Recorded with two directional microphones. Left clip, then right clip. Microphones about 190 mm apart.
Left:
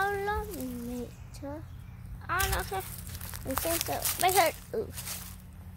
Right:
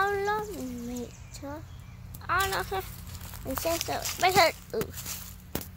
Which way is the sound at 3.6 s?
55° left (ahead or behind).